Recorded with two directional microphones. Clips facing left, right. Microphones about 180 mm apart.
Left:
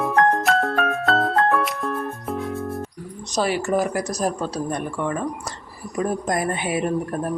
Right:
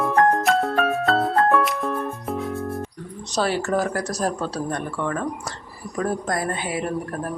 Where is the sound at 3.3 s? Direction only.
10° left (ahead or behind).